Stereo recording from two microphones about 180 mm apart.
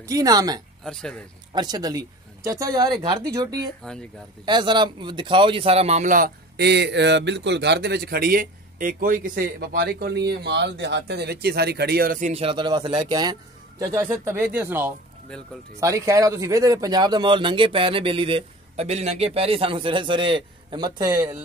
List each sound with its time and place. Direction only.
0.0 s speech: 20° right (ahead or behind)
0.8 s speech: 5° left (ahead or behind)
1.5 s speech: 25° right (ahead or behind)
15.3 s speech: 5° left (ahead or behind)
15.8 s speech: 20° right (ahead or behind)